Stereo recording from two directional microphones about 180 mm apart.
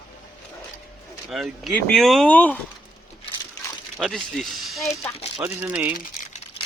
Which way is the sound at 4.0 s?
Centre (ahead or behind).